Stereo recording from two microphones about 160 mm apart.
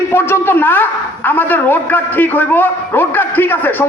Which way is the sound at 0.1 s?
15° left (ahead or behind).